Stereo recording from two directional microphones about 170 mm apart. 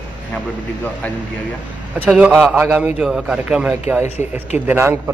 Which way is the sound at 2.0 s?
5° right (ahead or behind).